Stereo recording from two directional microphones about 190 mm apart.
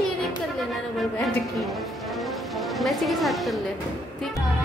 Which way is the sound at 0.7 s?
Centre (ahead or behind).